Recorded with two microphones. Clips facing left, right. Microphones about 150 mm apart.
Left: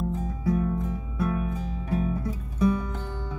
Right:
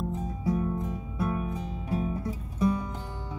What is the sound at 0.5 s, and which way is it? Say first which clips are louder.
Music: left 3 dB; 25° right (ahead or behind).